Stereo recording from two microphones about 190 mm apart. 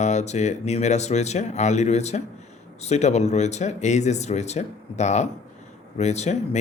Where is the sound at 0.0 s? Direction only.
35° left (ahead or behind).